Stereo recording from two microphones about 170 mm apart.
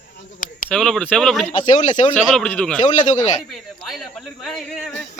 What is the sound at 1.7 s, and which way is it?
Speech, 45° left (ahead or behind).